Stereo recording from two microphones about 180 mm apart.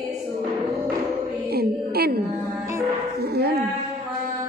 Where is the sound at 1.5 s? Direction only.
60° right (ahead or behind).